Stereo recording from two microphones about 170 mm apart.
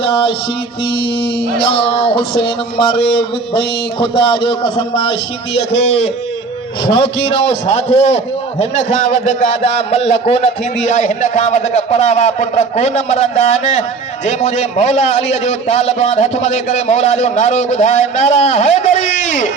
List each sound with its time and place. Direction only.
0.0 s a man's voice: 30° left (ahead or behind)
1.5 s a man's voice: 30° left (ahead or behind)